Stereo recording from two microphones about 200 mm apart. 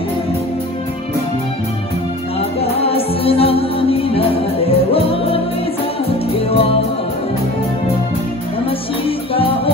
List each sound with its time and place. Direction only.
2.6 s music: 30° left (ahead or behind)
6.3 s music: 30° left (ahead or behind)
9.3 s music: 25° left (ahead or behind)